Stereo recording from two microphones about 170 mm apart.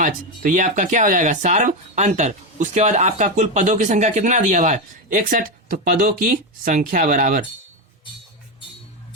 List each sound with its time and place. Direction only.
0.0 s speech: 50° right (ahead or behind)